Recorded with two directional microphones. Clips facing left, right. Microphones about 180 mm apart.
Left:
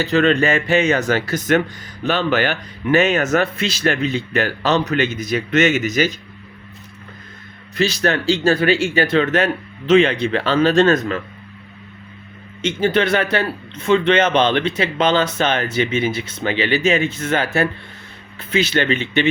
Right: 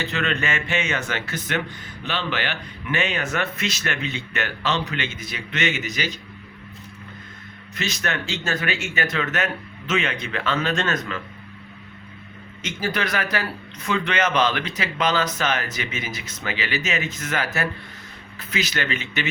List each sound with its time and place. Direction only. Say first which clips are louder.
0.0 s speech: left 10 dB; 35° left (ahead or behind)
7.8 s a man's voice: left 9 dB; 30° left (ahead or behind)
12.6 s a man's voice: left 9 dB; 25° left (ahead or behind)